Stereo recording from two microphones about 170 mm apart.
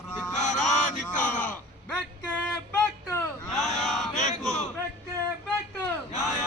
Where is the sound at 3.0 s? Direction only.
15° left (ahead or behind).